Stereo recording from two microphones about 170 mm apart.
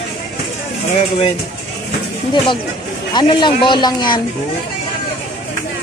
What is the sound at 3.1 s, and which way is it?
Speech, 30° left (ahead or behind).